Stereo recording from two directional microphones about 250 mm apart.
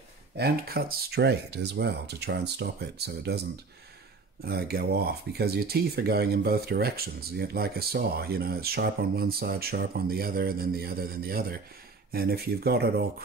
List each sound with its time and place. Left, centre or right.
0.4 s speech: right
4.5 s speech: right